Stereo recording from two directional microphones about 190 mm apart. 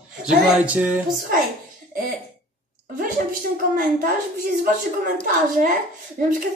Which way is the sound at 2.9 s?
45° right (ahead or behind).